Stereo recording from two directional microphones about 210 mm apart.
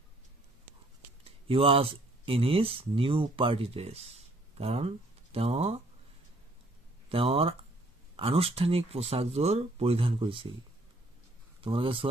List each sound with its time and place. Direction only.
1.2 s speech: 25° right (ahead or behind)
7.1 s speech: 25° right (ahead or behind)
11.6 s speech: 25° right (ahead or behind)